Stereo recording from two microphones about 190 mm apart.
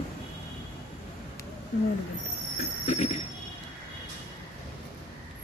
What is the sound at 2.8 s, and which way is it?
Jingle bell, 35° left (ahead or behind).